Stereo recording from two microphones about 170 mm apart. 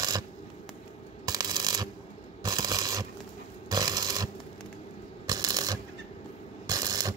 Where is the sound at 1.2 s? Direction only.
20° right (ahead or behind).